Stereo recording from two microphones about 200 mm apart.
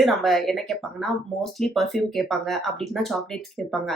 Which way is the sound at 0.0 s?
Centre (ahead or behind).